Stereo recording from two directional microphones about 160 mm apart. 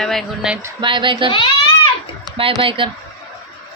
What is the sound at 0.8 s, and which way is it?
Speech, 30° right (ahead or behind).